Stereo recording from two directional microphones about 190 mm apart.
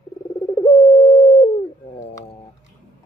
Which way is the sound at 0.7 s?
20° left (ahead or behind).